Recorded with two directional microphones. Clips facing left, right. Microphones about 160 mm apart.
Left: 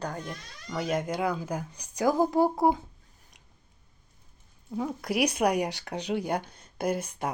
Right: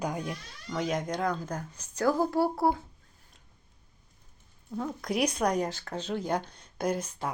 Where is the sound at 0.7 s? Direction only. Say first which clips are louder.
Left 1 dB; centre (ahead or behind).